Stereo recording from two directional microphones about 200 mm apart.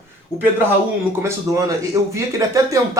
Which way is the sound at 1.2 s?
15° right (ahead or behind).